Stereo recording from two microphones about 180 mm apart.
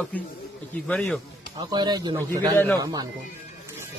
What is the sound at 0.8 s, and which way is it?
Speech, 5° left (ahead or behind).